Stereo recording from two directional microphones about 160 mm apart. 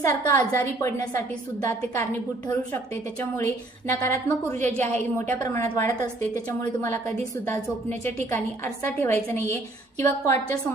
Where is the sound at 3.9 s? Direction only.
15° left (ahead or behind).